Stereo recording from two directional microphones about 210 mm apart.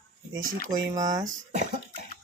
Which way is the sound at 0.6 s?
20° right (ahead or behind).